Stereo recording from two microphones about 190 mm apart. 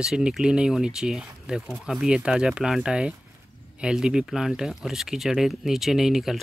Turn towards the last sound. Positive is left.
turn(degrees=0)  # may be behind; listen again after turning